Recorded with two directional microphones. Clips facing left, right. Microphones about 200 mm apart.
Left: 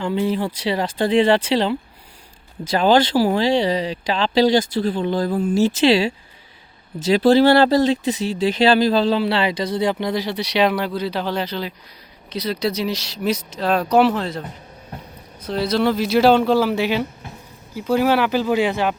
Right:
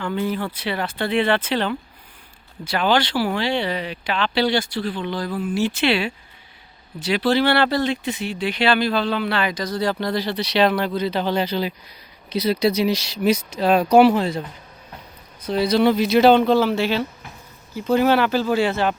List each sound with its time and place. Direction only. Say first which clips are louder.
0.3 s speech: left 4 dB; 30° left (ahead or behind)
2.7 s speech: left 5 dB; 35° left (ahead or behind); by 14.1 s centre (ahead or behind)
15.4 s speech: right 2 dB; centre (ahead or behind)